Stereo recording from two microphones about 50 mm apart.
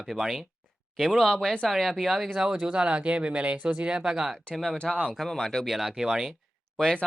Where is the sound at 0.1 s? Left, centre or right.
Centre.